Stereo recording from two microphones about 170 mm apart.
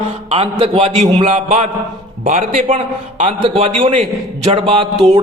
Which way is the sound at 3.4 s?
35° right (ahead or behind).